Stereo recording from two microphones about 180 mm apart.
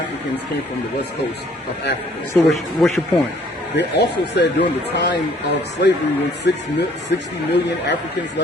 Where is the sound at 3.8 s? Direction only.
70° left (ahead or behind).